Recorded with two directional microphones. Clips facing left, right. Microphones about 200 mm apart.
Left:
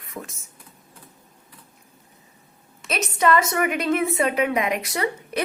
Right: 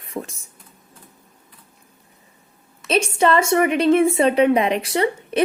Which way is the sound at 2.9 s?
30° right (ahead or behind).